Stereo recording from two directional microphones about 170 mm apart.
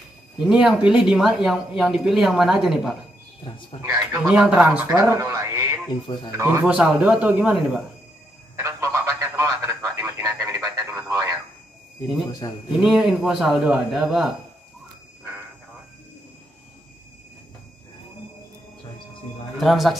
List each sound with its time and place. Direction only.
0.5 s speech: 5° right (ahead or behind)
3.7 s speech: 40° left (ahead or behind)
4.2 s speech: 5° right (ahead or behind)
8.5 s radio: 15° right (ahead or behind)
12.4 s speech: 25° left (ahead or behind)
12.8 s speech: 5° right (ahead or behind)
19.6 s speech: centre (ahead or behind)